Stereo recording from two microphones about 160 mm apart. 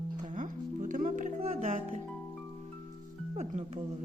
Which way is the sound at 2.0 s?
5° left (ahead or behind).